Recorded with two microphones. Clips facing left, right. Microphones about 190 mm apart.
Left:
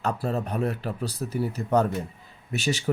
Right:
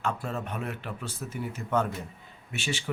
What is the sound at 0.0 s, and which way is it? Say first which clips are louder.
Speech: left 5 dB; 35° left (ahead or behind).